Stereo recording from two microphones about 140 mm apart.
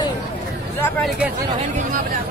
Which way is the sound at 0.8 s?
5° left (ahead or behind).